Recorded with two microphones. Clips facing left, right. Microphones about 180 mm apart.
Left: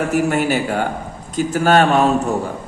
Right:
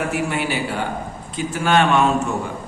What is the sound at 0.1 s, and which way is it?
A man's voice, 45° left (ahead or behind).